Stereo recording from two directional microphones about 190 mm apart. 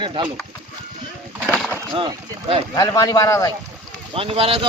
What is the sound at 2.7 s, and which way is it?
Speech, 20° left (ahead or behind).